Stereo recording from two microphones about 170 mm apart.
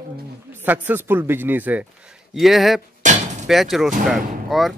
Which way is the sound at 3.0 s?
45° right (ahead or behind).